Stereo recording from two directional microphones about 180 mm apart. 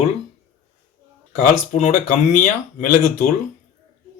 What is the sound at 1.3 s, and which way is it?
Speech, 40° left (ahead or behind).